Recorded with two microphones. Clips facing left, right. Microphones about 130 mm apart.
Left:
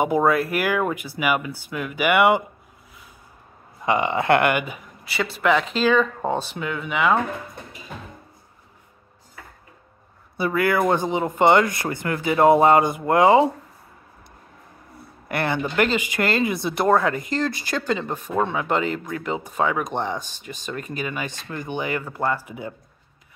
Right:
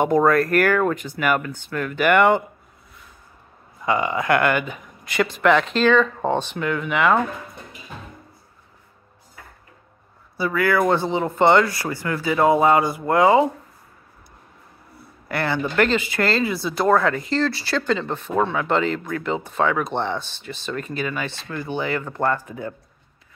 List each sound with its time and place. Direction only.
0.0 s speech: 5° left (ahead or behind)
3.8 s speech: 25° left (ahead or behind)
5.0 s speech: 5° left (ahead or behind)
10.3 s speech: 25° left (ahead or behind)
15.2 s speech: 20° left (ahead or behind)